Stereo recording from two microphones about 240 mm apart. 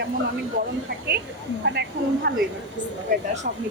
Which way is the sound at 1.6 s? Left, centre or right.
Right.